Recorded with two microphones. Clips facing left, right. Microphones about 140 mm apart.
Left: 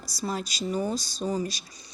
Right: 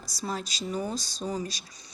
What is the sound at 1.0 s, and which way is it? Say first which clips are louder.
Speech: left 2 dB; 45° right (ahead or behind).